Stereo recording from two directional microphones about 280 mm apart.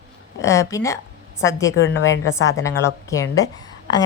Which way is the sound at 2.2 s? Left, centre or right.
Centre.